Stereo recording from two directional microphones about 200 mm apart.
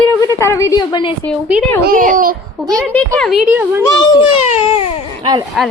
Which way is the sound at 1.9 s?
45° right (ahead or behind).